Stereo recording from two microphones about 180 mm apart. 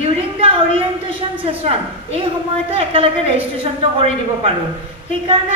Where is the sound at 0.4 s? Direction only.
30° right (ahead or behind).